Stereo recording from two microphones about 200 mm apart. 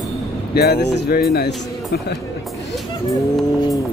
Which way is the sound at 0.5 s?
55° left (ahead or behind).